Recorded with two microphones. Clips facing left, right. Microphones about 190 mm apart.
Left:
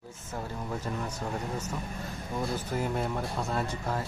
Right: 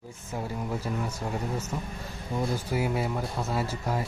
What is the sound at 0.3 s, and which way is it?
Speech, 10° right (ahead or behind).